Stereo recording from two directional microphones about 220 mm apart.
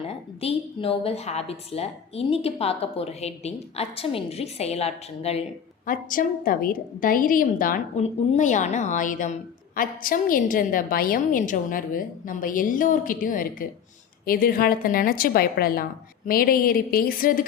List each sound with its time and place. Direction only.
0.1 s a woman's voice: 25° left (ahead or behind)
5.8 s a woman's voice: 40° left (ahead or behind)